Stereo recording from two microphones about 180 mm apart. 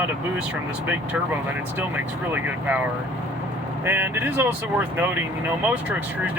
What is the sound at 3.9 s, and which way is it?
Speech, 10° right (ahead or behind).